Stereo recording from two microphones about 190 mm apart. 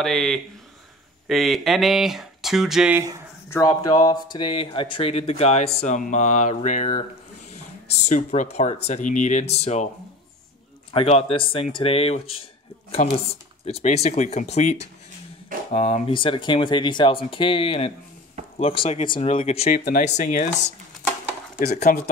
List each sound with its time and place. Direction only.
0.0 s speech: centre (ahead or behind)
3.4 s speech: 20° left (ahead or behind); by 9.8 s 35° left (ahead or behind)
10.9 s speech: 30° left (ahead or behind)
13.0 s speech: 45° left (ahead or behind)
13.7 s speech: 35° left (ahead or behind)
21.5 s speech: 35° left (ahead or behind)